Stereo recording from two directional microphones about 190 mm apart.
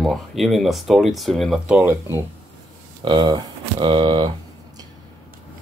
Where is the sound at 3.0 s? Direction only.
25° right (ahead or behind).